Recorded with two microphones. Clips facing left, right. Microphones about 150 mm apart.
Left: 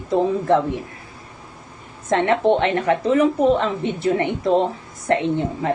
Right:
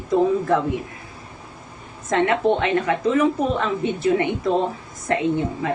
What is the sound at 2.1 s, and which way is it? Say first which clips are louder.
Speech: left 2 dB; 30° left (ahead or behind).